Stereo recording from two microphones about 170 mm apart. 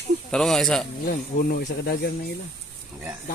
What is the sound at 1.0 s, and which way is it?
Speech, 55° left (ahead or behind).